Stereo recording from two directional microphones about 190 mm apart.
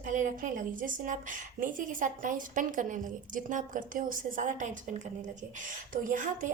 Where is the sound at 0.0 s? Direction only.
40° right (ahead or behind).